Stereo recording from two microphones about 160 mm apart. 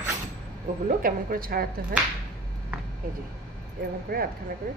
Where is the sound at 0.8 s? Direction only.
65° right (ahead or behind).